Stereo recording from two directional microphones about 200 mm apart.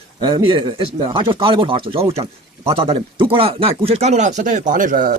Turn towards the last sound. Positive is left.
turn(degrees=-40)  # may be behind; listen again after turning